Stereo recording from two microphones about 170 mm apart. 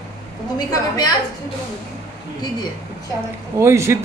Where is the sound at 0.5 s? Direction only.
20° left (ahead or behind).